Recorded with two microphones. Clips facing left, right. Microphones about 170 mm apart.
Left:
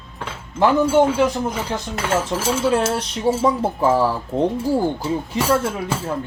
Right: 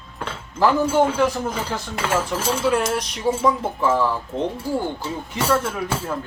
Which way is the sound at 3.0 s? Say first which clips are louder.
Left 3 dB; 30° left (ahead or behind).